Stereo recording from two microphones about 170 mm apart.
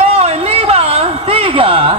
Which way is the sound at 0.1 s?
35° right (ahead or behind).